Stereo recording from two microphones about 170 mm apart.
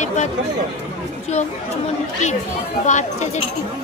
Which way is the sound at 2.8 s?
45° left (ahead or behind).